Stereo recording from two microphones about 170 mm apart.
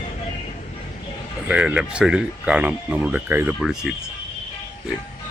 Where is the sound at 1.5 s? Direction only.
5° right (ahead or behind).